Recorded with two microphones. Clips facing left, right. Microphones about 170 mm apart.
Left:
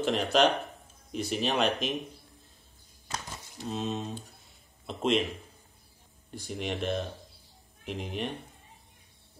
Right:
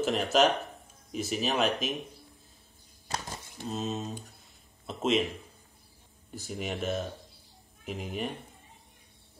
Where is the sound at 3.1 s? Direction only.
35° right (ahead or behind).